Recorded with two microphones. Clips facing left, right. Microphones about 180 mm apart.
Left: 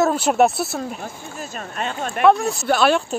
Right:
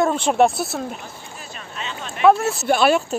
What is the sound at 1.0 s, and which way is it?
Speech, 45° left (ahead or behind).